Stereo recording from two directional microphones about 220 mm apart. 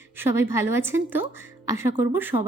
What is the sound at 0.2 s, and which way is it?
Speech, 10° right (ahead or behind).